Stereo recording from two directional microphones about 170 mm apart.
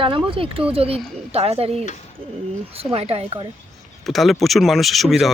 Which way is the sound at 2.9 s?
35° right (ahead or behind).